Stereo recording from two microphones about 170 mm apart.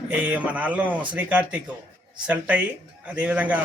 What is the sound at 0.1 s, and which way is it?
Speech, 10° right (ahead or behind).